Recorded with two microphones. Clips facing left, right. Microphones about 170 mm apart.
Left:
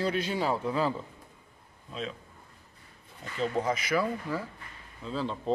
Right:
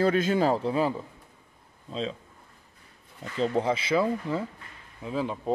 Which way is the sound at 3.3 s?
30° right (ahead or behind).